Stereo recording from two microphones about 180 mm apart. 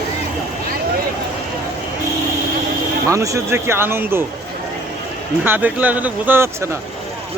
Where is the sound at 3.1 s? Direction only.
15° right (ahead or behind).